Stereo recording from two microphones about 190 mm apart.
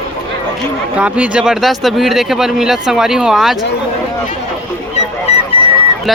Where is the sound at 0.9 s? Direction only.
5° right (ahead or behind).